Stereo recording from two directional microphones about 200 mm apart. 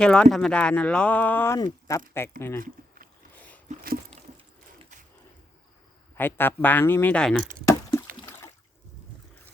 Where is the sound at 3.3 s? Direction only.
5° left (ahead or behind).